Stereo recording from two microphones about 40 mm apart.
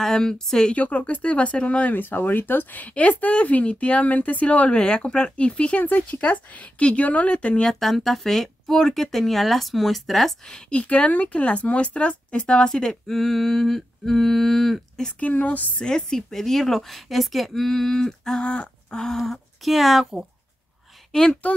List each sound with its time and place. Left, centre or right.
0.0 s speech: centre
0.7 s speech: left
1.9 s speech: left
3.0 s speech: left
5.9 s speech: left
6.8 s speech: left
7.1 s speech: left
7.8 s speech: centre
10.7 s speech: left; by 15.1 s centre
15.1 s speech: left
15.8 s speech: centre
18.4 s a sound: left
18.9 s speech: centre
21.1 s speech: centre